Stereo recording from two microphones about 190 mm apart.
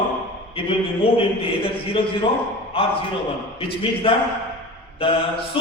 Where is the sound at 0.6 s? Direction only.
30° left (ahead or behind).